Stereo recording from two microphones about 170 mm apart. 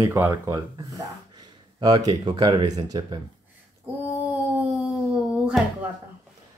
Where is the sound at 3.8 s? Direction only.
10° right (ahead or behind).